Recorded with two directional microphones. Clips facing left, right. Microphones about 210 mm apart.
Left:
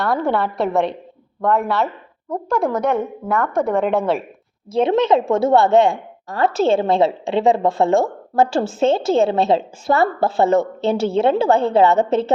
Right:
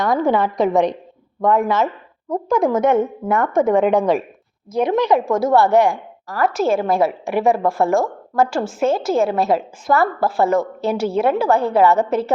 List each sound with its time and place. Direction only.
0.1 s a woman's voice: centre (ahead or behind)
0.7 s a woman's voice: 15° right (ahead or behind)
2.3 s a woman's voice: centre (ahead or behind)
4.7 s a woman's voice: 25° left (ahead or behind)